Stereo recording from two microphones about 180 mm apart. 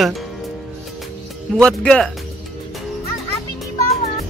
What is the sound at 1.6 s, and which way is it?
Speech, 5° left (ahead or behind).